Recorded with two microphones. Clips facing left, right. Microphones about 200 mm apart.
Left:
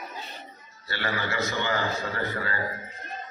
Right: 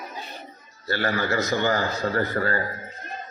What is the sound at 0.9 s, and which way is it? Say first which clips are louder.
A man's voice: right 6 dB; 40° right (ahead or behind).